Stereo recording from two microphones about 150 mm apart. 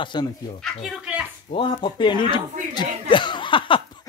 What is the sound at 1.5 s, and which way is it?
Speech, 35° left (ahead or behind).